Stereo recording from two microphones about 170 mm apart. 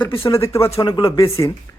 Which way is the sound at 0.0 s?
15° left (ahead or behind).